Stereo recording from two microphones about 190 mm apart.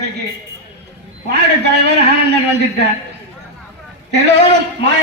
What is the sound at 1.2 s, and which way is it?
A man's voice, 60° right (ahead or behind).